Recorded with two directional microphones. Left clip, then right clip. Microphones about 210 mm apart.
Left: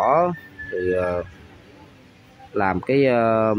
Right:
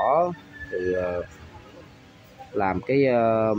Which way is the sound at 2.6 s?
20° left (ahead or behind).